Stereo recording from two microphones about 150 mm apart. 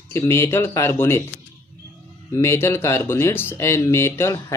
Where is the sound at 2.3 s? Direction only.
15° left (ahead or behind).